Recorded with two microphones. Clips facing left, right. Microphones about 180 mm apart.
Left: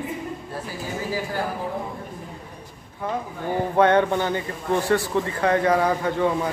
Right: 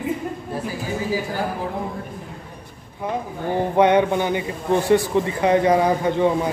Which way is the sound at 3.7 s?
15° right (ahead or behind).